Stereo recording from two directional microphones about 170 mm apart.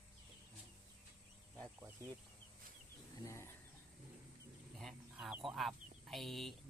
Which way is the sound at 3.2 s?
15° left (ahead or behind).